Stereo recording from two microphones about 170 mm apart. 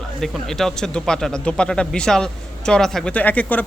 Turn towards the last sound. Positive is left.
turn(degrees=10)  # may be behind; listen again after turning